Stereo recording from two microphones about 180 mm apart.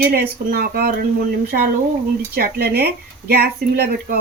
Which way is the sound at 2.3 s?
60° right (ahead or behind).